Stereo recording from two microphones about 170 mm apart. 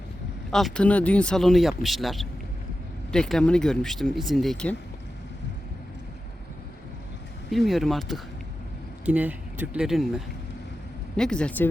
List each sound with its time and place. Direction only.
0.5 s speech: 5° left (ahead or behind)
7.5 s speech: centre (ahead or behind)
9.0 s speech: 10° right (ahead or behind); by 11.7 s 10° left (ahead or behind)